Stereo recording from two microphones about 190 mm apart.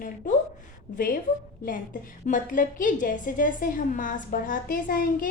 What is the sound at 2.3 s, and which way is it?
A woman's voice, 45° left (ahead or behind).